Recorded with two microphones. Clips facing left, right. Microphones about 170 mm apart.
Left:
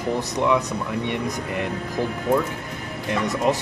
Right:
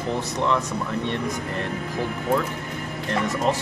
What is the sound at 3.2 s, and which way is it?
Speech, 15° left (ahead or behind).